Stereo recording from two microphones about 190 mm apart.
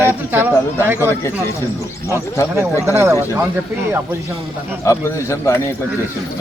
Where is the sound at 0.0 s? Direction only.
10° right (ahead or behind).